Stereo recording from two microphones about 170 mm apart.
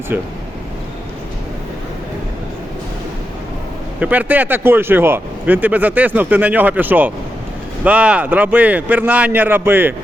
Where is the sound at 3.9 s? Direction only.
10° right (ahead or behind).